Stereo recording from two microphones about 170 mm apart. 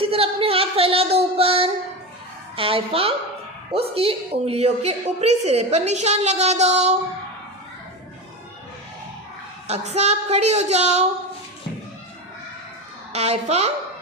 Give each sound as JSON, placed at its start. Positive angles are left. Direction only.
{"t": 0.0, "sound": "female singing", "side_deg": -35}
{"t": 2.6, "sound": "a woman's voice", "side_deg": -35}
{"t": 9.6, "sound": "a woman's voice", "side_deg": -40}
{"t": 13.1, "sound": "a woman's voice", "side_deg": -40}